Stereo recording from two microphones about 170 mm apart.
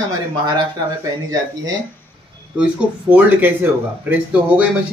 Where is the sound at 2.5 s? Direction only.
10° right (ahead or behind).